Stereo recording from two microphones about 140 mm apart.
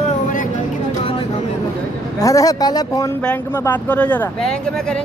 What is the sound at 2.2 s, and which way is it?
Speech, 25° left (ahead or behind).